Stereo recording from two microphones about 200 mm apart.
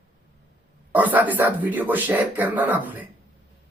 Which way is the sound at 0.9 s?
10° right (ahead or behind).